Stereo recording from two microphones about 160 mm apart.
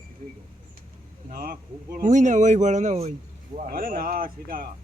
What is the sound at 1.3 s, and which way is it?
Speech, 60° right (ahead or behind).